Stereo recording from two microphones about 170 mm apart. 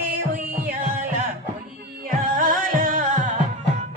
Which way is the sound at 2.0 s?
50° right (ahead or behind).